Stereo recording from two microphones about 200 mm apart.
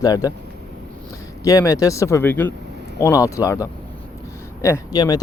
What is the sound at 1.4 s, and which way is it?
Speech, 15° left (ahead or behind).